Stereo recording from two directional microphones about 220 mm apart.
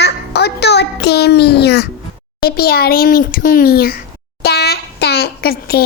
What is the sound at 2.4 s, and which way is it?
A child's voice, 45° left (ahead or behind).